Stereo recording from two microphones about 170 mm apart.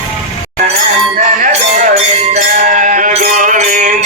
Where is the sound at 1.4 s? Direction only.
50° right (ahead or behind).